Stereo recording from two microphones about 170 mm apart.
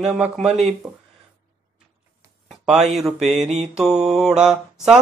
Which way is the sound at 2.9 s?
Centre (ahead or behind).